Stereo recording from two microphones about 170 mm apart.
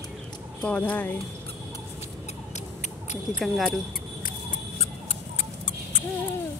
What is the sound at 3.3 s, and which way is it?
Speech, centre (ahead or behind).